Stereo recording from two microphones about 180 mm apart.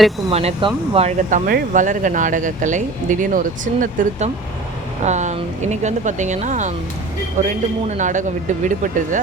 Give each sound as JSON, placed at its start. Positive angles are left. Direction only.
{"t": 0.3, "sound": "speech", "side_deg": -35}
{"t": 1.5, "sound": "speech", "side_deg": -50}